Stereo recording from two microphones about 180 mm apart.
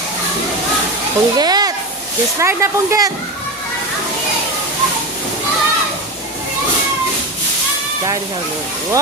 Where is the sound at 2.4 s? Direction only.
15° right (ahead or behind).